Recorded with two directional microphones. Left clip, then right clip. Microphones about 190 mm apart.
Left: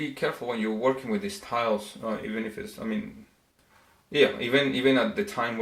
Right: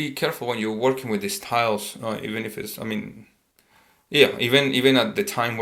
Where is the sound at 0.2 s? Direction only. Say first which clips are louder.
Right 4 dB; 35° right (ahead or behind).